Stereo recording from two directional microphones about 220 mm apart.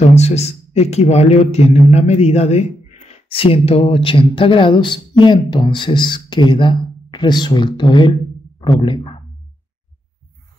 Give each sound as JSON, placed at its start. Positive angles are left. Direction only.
{"t": 0.0, "sound": "a man's voice", "side_deg": 30}